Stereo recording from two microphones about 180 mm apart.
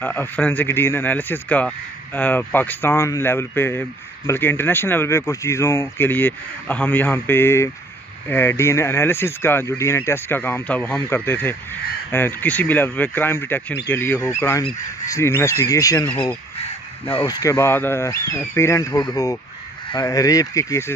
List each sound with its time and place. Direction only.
0.0 s speech: 10° left (ahead or behind)